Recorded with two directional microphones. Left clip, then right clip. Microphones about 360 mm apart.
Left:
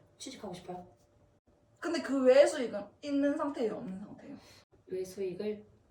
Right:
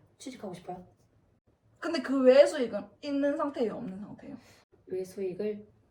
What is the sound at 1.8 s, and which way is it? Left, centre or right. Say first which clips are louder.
A woman's voice: right 4 dB; centre.